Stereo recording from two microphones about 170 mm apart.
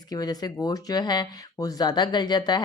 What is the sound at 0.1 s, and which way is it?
A woman's voice, 20° left (ahead or behind).